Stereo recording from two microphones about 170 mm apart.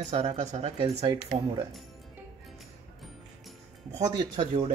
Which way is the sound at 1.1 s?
25° right (ahead or behind).